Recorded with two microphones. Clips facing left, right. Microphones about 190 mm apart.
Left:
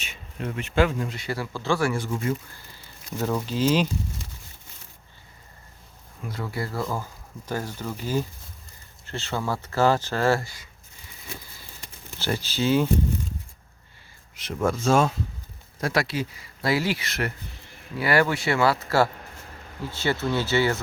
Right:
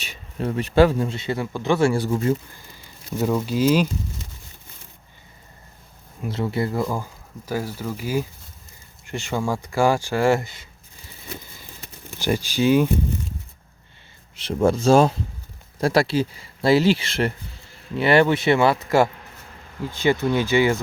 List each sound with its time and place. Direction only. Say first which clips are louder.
0.0 s speech: right 6 dB; 35° right (ahead or behind); by 1.9 s 20° right (ahead or behind)
1.9 s speech: right 6 dB; 35° right (ahead or behind)
3.1 s speech: right 5 dB; 10° right (ahead or behind)
6.2 s speech: right 7 dB; 25° right (ahead or behind)
12.2 s speech: right 5 dB; 15° right (ahead or behind)
14.3 s speech: right 6 dB; 30° right (ahead or behind)